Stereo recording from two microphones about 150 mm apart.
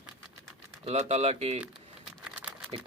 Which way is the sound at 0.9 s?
45° right (ahead or behind).